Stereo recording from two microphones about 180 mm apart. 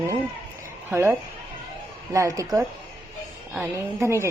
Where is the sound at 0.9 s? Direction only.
15° right (ahead or behind).